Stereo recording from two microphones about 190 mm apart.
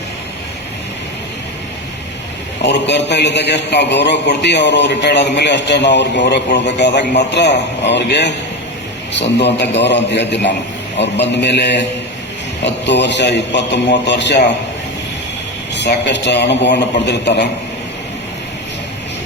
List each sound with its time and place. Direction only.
2.6 s a man's voice: 65° left (ahead or behind)
15.7 s a man's voice: 65° left (ahead or behind)